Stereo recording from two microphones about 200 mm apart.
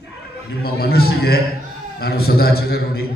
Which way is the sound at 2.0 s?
50° left (ahead or behind).